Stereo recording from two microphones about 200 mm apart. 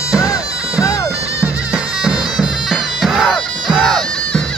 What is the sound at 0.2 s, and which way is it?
Bagpipes, 15° left (ahead or behind).